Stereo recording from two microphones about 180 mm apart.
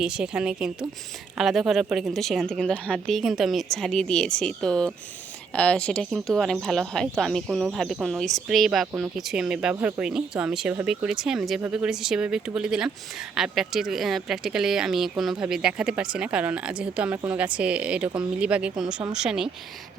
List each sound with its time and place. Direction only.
0.0 s speech: 5° right (ahead or behind)